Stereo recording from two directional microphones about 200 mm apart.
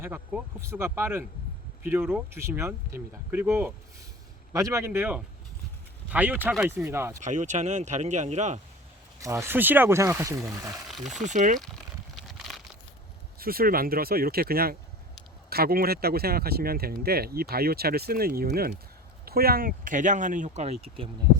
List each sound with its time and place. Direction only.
0.0 s speech: 10° right (ahead or behind)
6.8 s speech: 15° right (ahead or behind)
7.2 s speech: 35° right (ahead or behind)
9.2 s speech: 15° right (ahead or behind)
10.9 s speech: centre (ahead or behind)
11.2 s speech: 35° right (ahead or behind)
11.6 s a sound: centre (ahead or behind)
13.4 s speech: 50° right (ahead or behind); by 21.1 s 30° right (ahead or behind)